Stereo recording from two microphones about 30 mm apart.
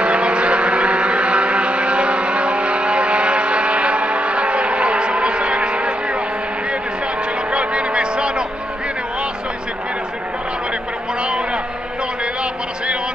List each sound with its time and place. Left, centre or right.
0.0 s vehicle: right
7.5 s vehicle: right
11.1 s a sound: right